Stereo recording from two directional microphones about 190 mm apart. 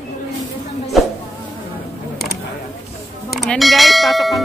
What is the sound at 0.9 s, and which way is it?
Music, centre (ahead or behind).